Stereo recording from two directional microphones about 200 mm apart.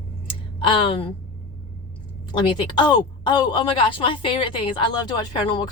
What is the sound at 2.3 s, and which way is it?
A woman's voice, 25° left (ahead or behind).